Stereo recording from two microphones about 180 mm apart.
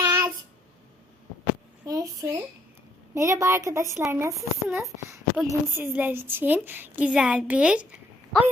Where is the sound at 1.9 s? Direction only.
20° right (ahead or behind).